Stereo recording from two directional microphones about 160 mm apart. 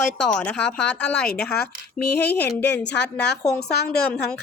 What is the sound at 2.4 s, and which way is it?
Speech, 10° left (ahead or behind).